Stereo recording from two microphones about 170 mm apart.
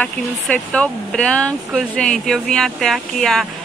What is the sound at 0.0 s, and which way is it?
Speech, 5° left (ahead or behind).